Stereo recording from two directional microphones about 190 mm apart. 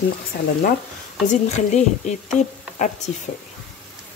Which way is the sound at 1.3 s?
35° left (ahead or behind).